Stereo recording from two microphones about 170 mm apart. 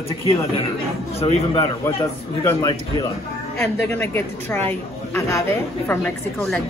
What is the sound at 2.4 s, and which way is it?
A woman's voice, 20° left (ahead or behind).